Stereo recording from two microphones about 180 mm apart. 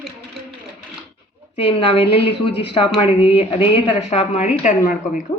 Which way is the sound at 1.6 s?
30° left (ahead or behind).